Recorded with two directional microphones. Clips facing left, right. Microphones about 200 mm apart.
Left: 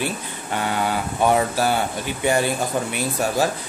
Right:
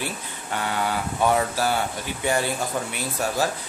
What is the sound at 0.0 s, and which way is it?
Speech, 20° left (ahead or behind).